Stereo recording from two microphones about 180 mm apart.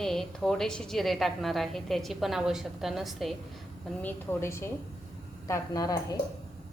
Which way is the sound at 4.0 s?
10° left (ahead or behind).